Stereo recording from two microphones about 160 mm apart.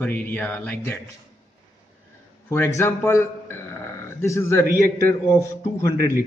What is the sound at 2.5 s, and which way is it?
A man's voice, 15° left (ahead or behind).